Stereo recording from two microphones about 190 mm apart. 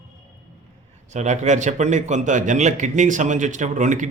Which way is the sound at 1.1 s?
40° right (ahead or behind).